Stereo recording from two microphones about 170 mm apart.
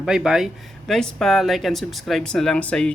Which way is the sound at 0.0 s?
5° right (ahead or behind).